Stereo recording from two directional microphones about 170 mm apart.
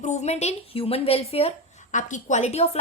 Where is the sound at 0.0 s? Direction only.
45° left (ahead or behind).